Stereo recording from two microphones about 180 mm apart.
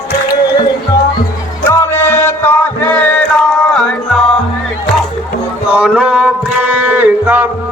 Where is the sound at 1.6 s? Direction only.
15° left (ahead or behind).